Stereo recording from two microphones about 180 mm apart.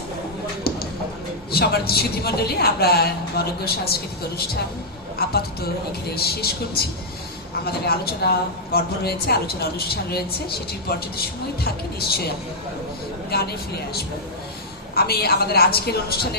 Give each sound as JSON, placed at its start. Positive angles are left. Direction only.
{"t": 1.5, "sound": "speech", "side_deg": 60}
{"t": 14.9, "sound": "speech", "side_deg": 60}